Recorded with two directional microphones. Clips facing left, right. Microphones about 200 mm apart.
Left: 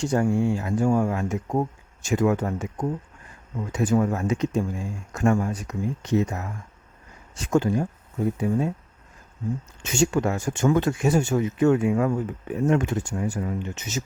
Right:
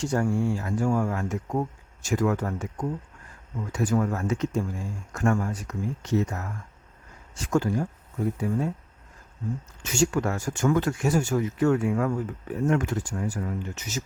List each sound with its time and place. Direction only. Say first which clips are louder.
0.0 s speech: left 3 dB; 20° left (ahead or behind)
9.8 s speech: left 2 dB; 20° left (ahead or behind)